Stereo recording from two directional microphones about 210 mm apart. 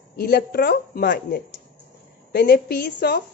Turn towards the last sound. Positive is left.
turn(degrees=50)  # may be behind; listen again after turning